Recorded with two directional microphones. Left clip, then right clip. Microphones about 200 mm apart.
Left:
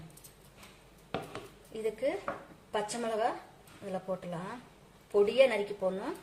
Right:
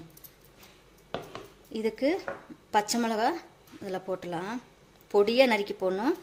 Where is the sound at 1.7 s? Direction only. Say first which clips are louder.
Right 5 dB; 60° right (ahead or behind).